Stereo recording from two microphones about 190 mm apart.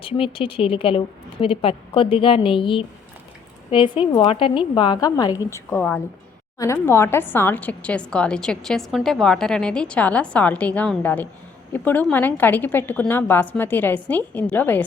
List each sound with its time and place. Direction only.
0.0 s a woman's voice: 30° left (ahead or behind); by 14.8 s 10° left (ahead or behind)